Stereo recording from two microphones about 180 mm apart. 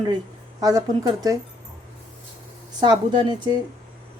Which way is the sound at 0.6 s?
20° right (ahead or behind).